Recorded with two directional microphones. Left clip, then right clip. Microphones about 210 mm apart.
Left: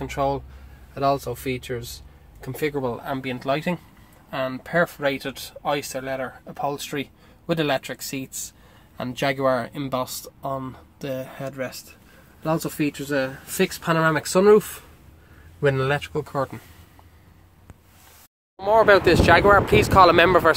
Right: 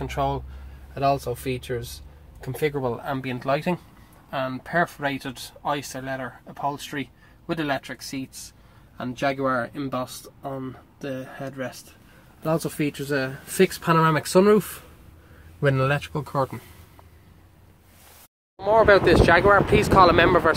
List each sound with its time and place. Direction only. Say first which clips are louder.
0.0 s speech: left 2 dB; 10° right (ahead or behind)
4.3 s speech: left 1 dB; 10° left (ahead or behind); by 11.8 s 25° left (ahead or behind)
12.4 s speech: left 1 dB; 5° right (ahead or behind)
18.6 s speech: left 1 dB; 10° left (ahead or behind)